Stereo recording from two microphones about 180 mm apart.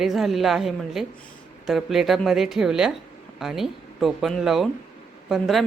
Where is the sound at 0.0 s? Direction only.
Centre (ahead or behind).